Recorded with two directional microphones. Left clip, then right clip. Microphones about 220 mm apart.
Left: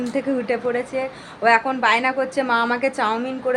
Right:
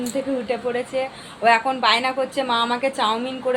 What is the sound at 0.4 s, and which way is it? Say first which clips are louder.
A woman's voice: left 2 dB; 20° left (ahead or behind).